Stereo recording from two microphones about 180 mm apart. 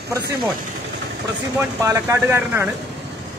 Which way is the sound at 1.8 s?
15° right (ahead or behind).